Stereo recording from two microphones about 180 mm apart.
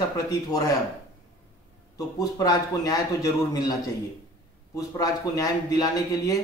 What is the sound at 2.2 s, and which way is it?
Speech, 20° left (ahead or behind).